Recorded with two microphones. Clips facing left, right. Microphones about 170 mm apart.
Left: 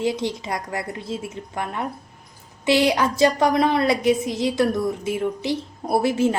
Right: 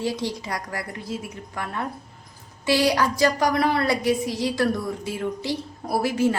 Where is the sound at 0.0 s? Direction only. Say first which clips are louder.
Left 3 dB; 20° left (ahead or behind).